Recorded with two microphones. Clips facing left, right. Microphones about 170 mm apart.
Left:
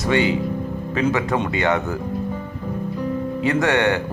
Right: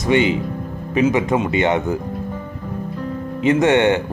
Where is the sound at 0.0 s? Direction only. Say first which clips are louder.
Right 2 dB; 20° right (ahead or behind).